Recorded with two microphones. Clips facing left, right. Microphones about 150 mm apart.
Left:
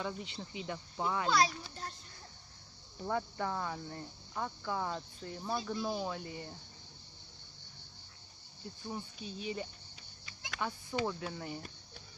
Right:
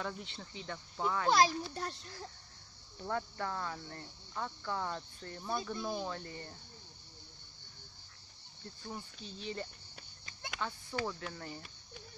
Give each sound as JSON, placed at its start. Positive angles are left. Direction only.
{"t": 0.0, "sound": "speech", "side_deg": 5}
{"t": 0.4, "sound": "cricket", "side_deg": 15}
{"t": 1.8, "sound": "speech", "side_deg": -70}
{"t": 3.0, "sound": "cricket", "side_deg": 10}
{"t": 8.8, "sound": "cricket", "side_deg": 10}